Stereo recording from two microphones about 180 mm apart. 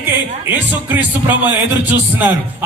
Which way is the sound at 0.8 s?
10° right (ahead or behind).